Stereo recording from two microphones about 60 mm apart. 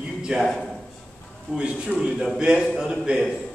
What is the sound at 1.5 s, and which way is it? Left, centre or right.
Speech, centre.